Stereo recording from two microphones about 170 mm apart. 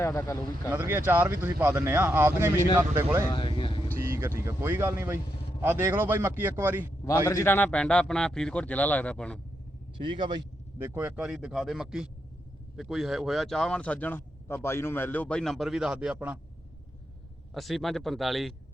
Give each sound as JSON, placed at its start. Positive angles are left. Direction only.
{"t": 0.0, "sound": "speech", "side_deg": 15}
{"t": 0.7, "sound": "speech", "side_deg": -10}
{"t": 7.3, "sound": "speech", "side_deg": 15}
{"t": 10.0, "sound": "speech", "side_deg": -30}
{"t": 10.8, "sound": "speech", "side_deg": -10}
{"t": 17.5, "sound": "speech", "side_deg": 0}